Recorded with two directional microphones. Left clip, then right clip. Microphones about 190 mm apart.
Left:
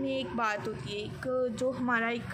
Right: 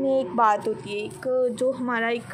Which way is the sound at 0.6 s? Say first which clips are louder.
Right 8 dB; 20° right (ahead or behind).